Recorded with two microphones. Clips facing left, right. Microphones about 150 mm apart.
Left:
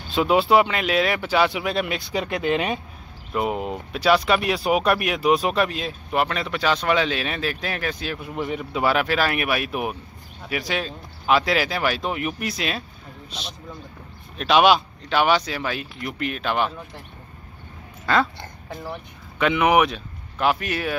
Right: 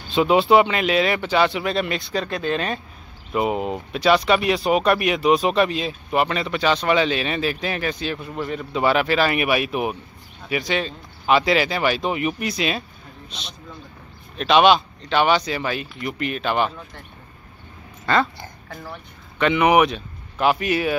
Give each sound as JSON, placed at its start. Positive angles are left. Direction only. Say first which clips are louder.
{"t": 0.1, "sound": "speech", "louder": "right 2 dB", "side_deg": 0}
{"t": 2.2, "sound": "speech", "louder": "left 1 dB", "side_deg": 15}
{"t": 3.3, "sound": "speech", "louder": "right 3 dB", "side_deg": 0}
{"t": 8.4, "sound": "speech", "louder": "even", "side_deg": 15}
{"t": 18.0, "sound": "dog", "louder": "right 1 dB", "side_deg": 5}
{"t": 18.7, "sound": "speech", "louder": "left 4 dB", "side_deg": 20}
{"t": 19.3, "sound": "speech", "louder": "right 2 dB", "side_deg": 5}